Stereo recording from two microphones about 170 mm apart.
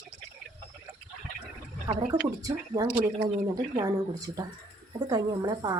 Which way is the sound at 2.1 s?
20° right (ahead or behind).